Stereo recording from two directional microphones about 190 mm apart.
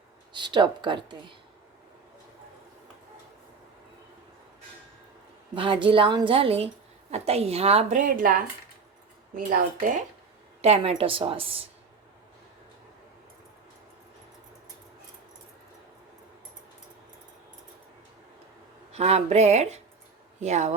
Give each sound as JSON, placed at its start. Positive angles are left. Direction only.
{"t": 0.3, "sound": "a woman's voice", "side_deg": -25}
{"t": 5.5, "sound": "a woman's voice", "side_deg": -30}
{"t": 10.6, "sound": "a woman's voice", "side_deg": -30}
{"t": 18.9, "sound": "a woman's voice", "side_deg": -35}